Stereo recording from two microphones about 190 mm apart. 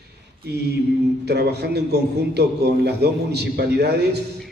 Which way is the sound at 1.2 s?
60° right (ahead or behind).